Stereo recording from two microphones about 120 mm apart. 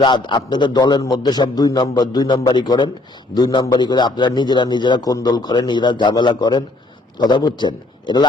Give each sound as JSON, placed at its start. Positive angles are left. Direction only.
{"t": 0.0, "sound": "a man's voice", "side_deg": 40}